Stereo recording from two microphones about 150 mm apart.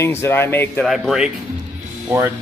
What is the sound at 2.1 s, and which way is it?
Speech, 15° right (ahead or behind).